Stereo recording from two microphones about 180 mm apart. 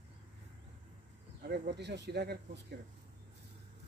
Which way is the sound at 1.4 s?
65° right (ahead or behind).